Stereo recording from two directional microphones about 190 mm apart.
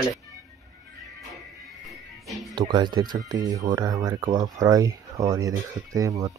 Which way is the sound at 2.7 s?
25° right (ahead or behind).